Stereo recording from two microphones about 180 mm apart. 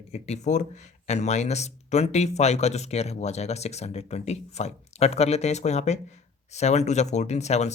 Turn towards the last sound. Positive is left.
turn(degrees=40)  # may be behind; listen again after turning